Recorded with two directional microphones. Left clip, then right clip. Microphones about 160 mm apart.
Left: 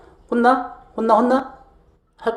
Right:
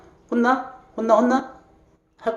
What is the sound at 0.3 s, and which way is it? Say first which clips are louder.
A man's voice: left 4 dB; 20° left (ahead or behind).